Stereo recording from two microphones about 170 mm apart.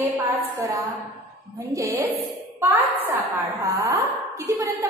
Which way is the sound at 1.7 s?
20° right (ahead or behind).